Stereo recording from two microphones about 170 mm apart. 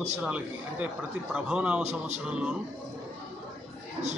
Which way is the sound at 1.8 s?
40° right (ahead or behind).